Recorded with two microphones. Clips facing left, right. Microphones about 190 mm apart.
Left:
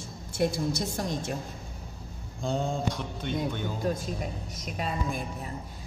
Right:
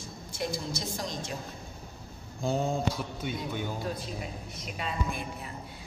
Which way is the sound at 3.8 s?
45° left (ahead or behind).